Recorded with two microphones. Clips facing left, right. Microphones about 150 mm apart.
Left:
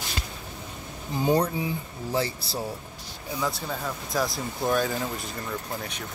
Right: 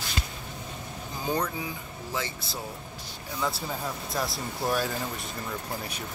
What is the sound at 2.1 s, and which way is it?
Speech, 35° left (ahead or behind).